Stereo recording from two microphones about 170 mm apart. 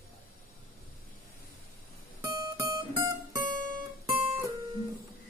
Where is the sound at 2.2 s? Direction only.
20° right (ahead or behind).